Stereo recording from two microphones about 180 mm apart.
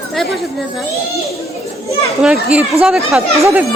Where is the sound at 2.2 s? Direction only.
5° right (ahead or behind).